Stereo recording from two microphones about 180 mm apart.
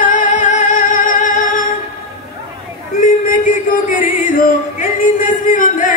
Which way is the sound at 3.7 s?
50° left (ahead or behind).